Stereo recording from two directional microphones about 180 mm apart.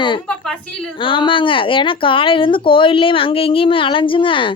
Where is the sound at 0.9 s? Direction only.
30° left (ahead or behind).